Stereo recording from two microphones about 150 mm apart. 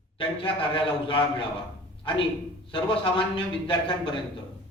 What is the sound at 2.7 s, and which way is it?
A man's voice, 35° left (ahead or behind).